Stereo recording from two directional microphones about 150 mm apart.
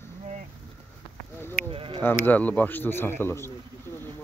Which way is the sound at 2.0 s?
10° left (ahead or behind).